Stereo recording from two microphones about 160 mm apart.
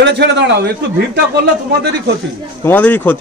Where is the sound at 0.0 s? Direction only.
90° right.